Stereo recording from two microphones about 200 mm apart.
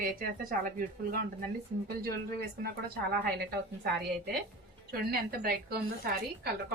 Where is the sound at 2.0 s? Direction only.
50° right (ahead or behind).